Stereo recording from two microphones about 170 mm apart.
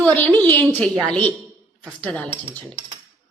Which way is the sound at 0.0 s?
10° left (ahead or behind).